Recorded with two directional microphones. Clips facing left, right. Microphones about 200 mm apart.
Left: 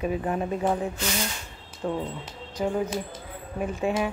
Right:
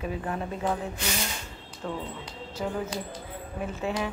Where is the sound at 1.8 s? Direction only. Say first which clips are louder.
Left 5 dB; 20° left (ahead or behind).